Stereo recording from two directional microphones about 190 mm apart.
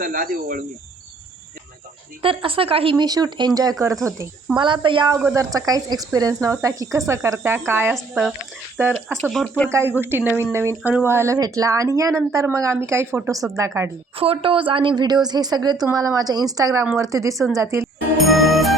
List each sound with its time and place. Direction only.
0.0 s speech: 45° right (ahead or behind)
2.2 s a woman's voice: 30° right (ahead or behind); by 8.3 s 5° right (ahead or behind)
9.3 s speech: centre (ahead or behind)
9.6 s speech: 15° right (ahead or behind)
14.2 s a woman's voice: 30° right (ahead or behind)
18.2 s music: centre (ahead or behind)